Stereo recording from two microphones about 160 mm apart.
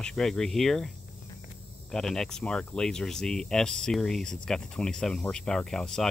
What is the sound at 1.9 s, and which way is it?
Speech, 5° left (ahead or behind).